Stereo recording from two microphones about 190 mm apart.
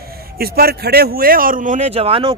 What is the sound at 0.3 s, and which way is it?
Speech, 55° right (ahead or behind).